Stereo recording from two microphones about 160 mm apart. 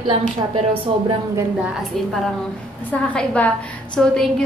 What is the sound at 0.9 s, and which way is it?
Speech, 35° right (ahead or behind).